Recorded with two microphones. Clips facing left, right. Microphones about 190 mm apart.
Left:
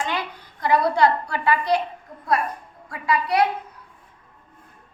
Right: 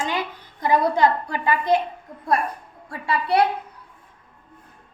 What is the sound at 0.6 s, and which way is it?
A woman's voice, 20° right (ahead or behind).